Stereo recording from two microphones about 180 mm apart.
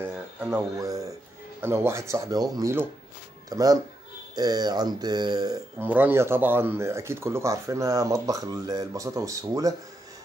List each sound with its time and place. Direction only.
0.0 s a sound: 15° right (ahead or behind)
1.6 s speech: 15° right (ahead or behind)
5.8 s speech: 10° right (ahead or behind)